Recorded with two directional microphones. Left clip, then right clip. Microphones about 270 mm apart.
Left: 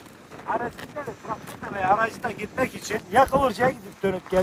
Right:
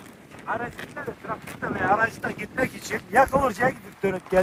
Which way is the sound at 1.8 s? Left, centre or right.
Left.